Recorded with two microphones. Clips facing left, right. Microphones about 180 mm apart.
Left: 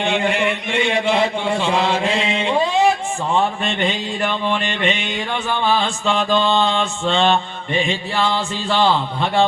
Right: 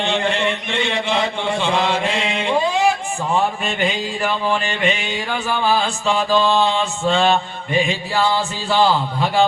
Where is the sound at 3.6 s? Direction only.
5° right (ahead or behind).